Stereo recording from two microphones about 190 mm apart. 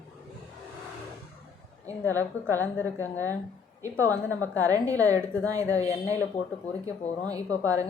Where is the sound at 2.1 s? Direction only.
15° right (ahead or behind).